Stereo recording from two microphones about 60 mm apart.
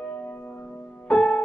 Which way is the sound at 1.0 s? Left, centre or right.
Centre.